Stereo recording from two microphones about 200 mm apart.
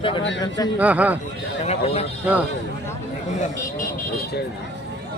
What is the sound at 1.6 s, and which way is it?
Speech, 30° left (ahead or behind).